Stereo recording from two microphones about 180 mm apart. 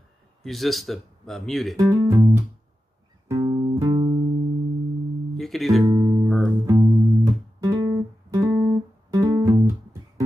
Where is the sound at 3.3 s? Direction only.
25° right (ahead or behind).